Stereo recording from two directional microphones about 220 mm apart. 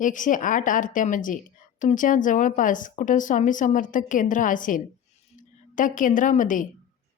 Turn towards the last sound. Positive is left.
turn(degrees=35)  # may be behind; listen again after turning